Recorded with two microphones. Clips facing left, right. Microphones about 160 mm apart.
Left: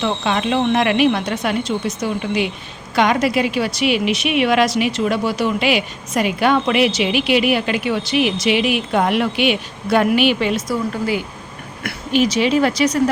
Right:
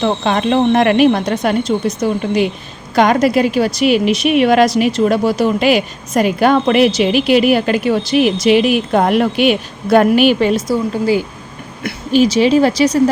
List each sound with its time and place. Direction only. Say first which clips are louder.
0.0 s a woman's voice: right 4 dB; 45° right (ahead or behind)
10.7 s a woman's voice: right 5 dB; 30° right (ahead or behind)